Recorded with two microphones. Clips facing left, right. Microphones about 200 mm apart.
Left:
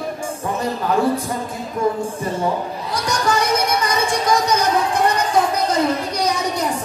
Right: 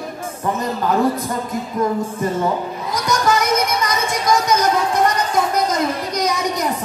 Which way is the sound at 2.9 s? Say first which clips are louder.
Right 2 dB; 30° left (ahead or behind).